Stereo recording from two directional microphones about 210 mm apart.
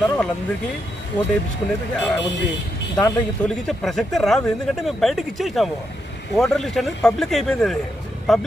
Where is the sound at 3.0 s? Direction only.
Centre (ahead or behind).